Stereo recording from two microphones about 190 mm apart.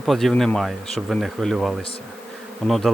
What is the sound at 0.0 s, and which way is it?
Bee, centre (ahead or behind).